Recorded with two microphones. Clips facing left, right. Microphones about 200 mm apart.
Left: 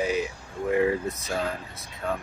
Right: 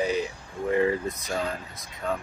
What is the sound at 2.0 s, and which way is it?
Speech, 5° left (ahead or behind).